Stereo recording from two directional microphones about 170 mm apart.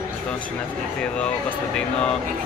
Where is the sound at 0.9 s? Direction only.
5° left (ahead or behind).